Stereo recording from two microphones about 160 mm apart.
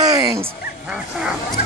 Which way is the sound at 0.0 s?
25° right (ahead or behind).